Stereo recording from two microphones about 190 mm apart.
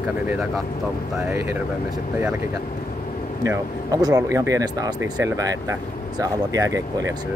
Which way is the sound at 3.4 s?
20° right (ahead or behind).